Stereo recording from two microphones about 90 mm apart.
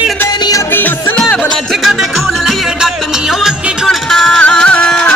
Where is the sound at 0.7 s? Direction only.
20° left (ahead or behind).